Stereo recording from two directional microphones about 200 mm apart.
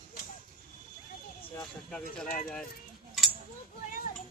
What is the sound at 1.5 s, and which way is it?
Speech, 5° left (ahead or behind).